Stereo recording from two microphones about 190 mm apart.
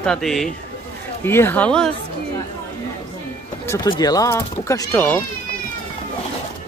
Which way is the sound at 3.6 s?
15° left (ahead or behind).